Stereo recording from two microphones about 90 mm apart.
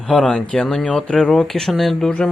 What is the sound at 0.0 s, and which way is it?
Speech, 5° left (ahead or behind).